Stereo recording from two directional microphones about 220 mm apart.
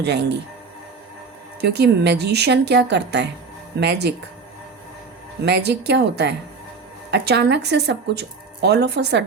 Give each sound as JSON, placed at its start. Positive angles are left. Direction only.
{"t": 0.0, "sound": "speech", "side_deg": -50}
{"t": 1.6, "sound": "speech", "side_deg": -50}
{"t": 5.5, "sound": "speech", "side_deg": -50}